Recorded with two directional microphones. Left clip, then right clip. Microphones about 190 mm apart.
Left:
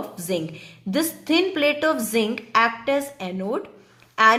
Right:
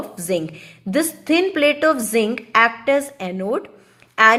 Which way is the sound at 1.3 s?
20° right (ahead or behind).